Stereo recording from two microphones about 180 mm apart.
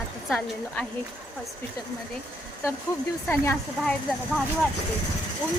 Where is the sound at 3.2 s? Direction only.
10° left (ahead or behind).